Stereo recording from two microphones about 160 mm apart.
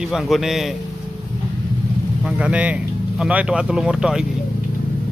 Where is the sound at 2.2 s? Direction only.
5° right (ahead or behind).